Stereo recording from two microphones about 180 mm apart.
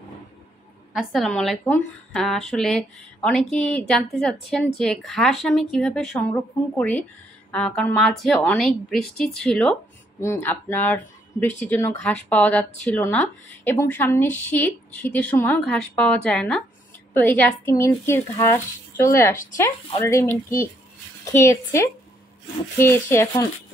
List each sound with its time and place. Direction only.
0.9 s a woman's voice: centre (ahead or behind)
7.5 s a woman's voice: 5° left (ahead or behind)